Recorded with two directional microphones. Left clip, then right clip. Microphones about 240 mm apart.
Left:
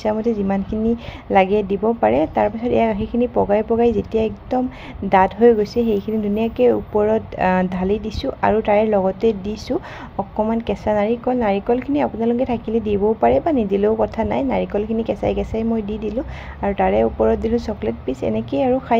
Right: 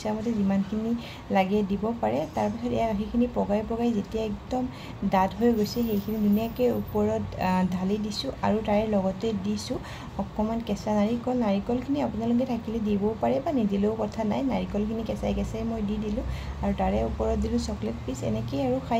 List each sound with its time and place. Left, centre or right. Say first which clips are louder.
0.3 s a woman's voice: left 9 dB; left
16.6 s a woman's voice: left 11 dB; left